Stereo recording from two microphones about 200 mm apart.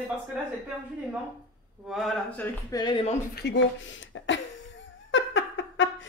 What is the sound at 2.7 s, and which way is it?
Speech, 20° left (ahead or behind).